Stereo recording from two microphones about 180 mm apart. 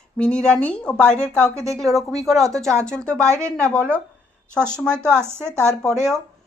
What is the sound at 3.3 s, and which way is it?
Speech, 15° right (ahead or behind).